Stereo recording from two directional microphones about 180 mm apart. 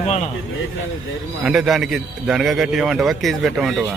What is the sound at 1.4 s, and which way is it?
Speech, centre (ahead or behind).